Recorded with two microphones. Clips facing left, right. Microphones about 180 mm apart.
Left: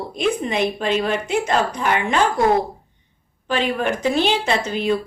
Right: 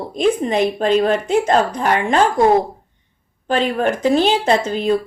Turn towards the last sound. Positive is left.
turn(degrees=-40)  # may be behind; listen again after turning